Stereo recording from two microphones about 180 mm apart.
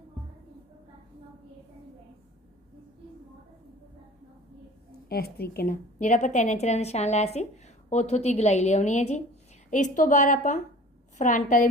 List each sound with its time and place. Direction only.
5.0 s a woman's voice: 60° left (ahead or behind)